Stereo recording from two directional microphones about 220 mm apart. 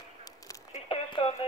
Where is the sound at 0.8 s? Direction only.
25° left (ahead or behind).